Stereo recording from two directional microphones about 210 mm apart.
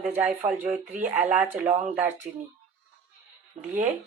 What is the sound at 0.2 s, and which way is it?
Speech, 10° right (ahead or behind).